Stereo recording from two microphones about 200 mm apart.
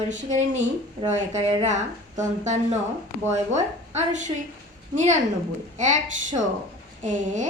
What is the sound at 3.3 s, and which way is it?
A woman's voice, 35° right (ahead or behind).